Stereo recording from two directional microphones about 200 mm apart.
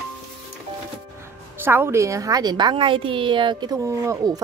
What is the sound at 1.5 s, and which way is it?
A woman's voice, 10° right (ahead or behind).